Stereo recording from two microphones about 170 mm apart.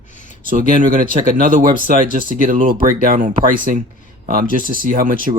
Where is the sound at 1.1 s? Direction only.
55° right (ahead or behind).